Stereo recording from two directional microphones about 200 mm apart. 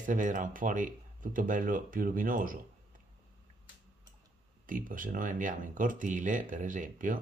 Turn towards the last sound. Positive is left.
turn(degrees=-40)  # may be behind; listen again after turning